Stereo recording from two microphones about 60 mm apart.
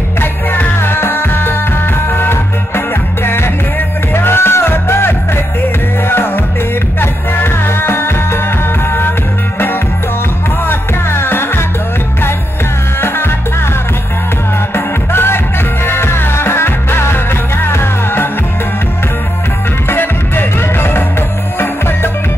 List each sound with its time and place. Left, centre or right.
0.2 s music: left
4.1 s music: left
10.7 s music: left
15.1 s music: left
19.9 s music: left